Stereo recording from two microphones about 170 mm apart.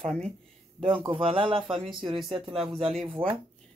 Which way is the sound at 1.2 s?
35° right (ahead or behind).